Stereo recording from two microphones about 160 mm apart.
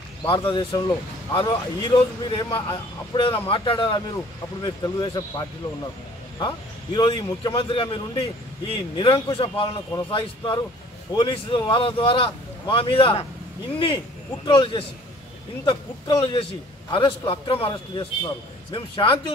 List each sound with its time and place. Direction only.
0.2 s speech: 30° left (ahead or behind)